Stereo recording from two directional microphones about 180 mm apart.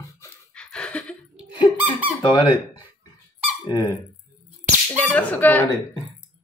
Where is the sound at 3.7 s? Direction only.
20° left (ahead or behind).